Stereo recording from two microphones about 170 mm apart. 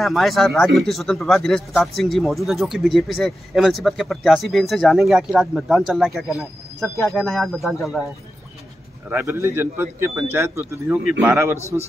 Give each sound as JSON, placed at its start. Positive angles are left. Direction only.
{"t": 0.0, "sound": "speech", "side_deg": 0}
{"t": 9.1, "sound": "speech", "side_deg": -15}